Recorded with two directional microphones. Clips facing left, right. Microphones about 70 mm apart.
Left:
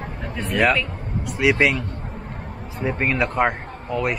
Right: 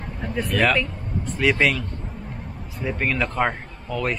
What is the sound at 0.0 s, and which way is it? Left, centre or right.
Speech, centre.